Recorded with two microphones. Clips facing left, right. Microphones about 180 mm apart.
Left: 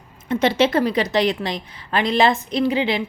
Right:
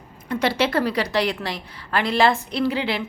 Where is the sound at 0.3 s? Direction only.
20° left (ahead or behind).